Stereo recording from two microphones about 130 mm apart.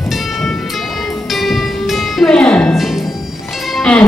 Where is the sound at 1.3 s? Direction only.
Centre (ahead or behind).